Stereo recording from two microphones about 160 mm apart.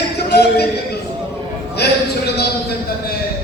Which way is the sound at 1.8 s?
90° left.